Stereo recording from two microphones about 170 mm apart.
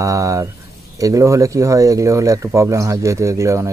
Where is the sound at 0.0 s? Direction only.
20° right (ahead or behind).